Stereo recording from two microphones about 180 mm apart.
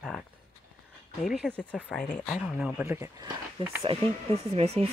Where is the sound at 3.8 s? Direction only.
35° right (ahead or behind).